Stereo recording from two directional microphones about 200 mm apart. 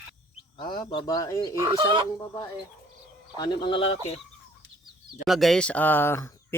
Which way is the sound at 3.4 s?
25° left (ahead or behind).